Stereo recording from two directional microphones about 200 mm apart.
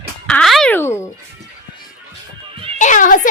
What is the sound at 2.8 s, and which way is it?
Speech, 40° left (ahead or behind).